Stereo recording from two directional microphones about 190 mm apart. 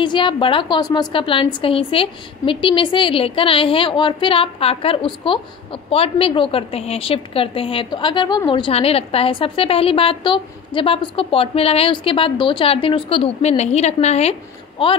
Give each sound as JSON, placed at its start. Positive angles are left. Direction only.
{"t": 0.0, "sound": "a woman's voice", "side_deg": 25}